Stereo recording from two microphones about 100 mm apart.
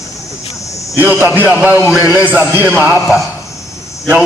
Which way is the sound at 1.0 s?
20° right (ahead or behind).